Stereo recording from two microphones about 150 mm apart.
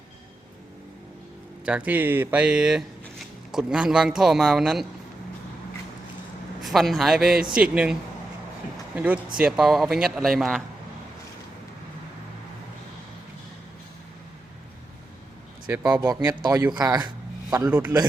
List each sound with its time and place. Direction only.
1.6 s speech: 10° right (ahead or behind)
6.6 s speech: centre (ahead or behind)
9.0 s speech: 10° right (ahead or behind)
15.8 s speech: 25° right (ahead or behind)
17.7 s speech: 10° right (ahead or behind)